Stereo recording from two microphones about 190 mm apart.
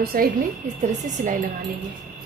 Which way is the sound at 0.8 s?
40° right (ahead or behind).